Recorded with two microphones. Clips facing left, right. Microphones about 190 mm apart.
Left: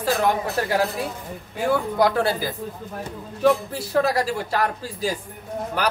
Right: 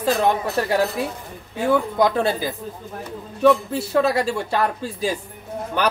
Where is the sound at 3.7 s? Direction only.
25° right (ahead or behind).